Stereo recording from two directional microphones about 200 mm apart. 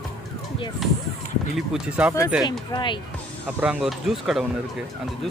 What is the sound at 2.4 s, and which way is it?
Speech, 25° left (ahead or behind).